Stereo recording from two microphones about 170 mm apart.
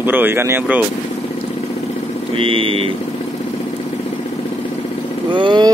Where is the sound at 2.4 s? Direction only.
30° right (ahead or behind).